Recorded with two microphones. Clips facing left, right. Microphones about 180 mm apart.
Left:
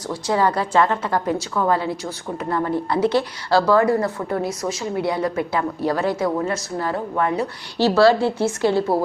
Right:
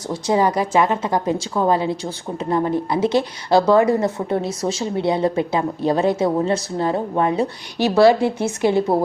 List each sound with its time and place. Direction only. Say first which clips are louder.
0.1 s a woman's voice: right 2 dB; 20° right (ahead or behind)